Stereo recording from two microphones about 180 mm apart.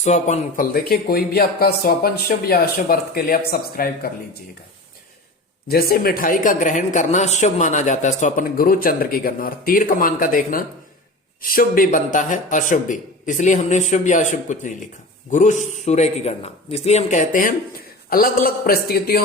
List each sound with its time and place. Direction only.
0.0 s speech: 40° left (ahead or behind)
5.6 s a man's voice: 60° left (ahead or behind)